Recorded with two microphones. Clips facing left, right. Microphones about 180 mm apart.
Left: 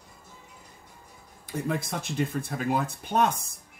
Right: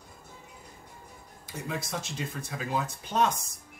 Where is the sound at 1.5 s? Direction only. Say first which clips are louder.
Left 5 dB; 55° left (ahead or behind).